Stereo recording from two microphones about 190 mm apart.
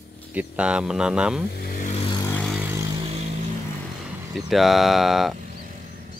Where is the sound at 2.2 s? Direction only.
10° left (ahead or behind).